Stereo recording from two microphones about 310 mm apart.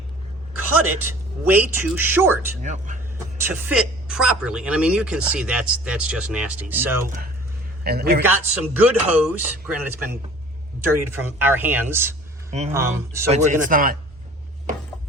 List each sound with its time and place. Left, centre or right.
0.5 s a man's voice: right
1.5 s speech: centre
2.6 s speech: right
3.3 s speech: centre
7.0 s a man's voice: right
8.2 s speech: centre
12.5 s speech: right